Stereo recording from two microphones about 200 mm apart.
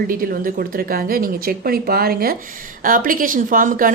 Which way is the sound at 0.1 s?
45° right (ahead or behind).